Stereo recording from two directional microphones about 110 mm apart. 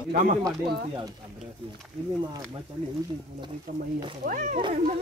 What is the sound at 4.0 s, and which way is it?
Speech, 50° right (ahead or behind).